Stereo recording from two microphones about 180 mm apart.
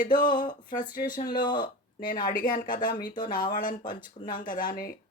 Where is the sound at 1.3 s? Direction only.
25° left (ahead or behind).